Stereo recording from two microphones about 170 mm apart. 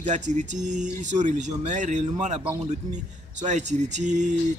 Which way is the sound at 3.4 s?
45° right (ahead or behind).